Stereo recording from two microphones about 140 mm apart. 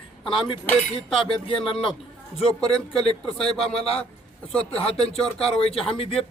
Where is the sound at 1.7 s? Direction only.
40° left (ahead or behind).